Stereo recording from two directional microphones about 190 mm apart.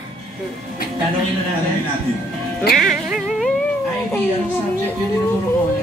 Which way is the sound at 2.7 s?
50° left (ahead or behind).